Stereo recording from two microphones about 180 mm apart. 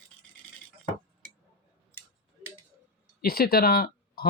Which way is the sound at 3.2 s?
60° left (ahead or behind).